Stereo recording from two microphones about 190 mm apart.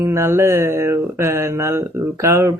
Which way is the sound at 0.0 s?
15° right (ahead or behind).